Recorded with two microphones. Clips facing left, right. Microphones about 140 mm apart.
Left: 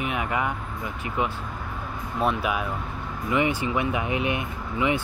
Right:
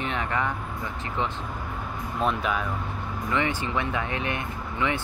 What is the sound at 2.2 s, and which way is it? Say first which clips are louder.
Speech: left 1 dB; 5° left (ahead or behind).